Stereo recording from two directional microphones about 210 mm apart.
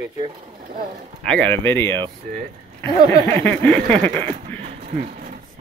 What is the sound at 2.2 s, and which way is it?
Vehicle, 35° right (ahead or behind).